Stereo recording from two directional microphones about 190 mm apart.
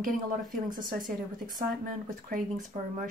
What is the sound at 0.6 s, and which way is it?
Speech, 45° right (ahead or behind).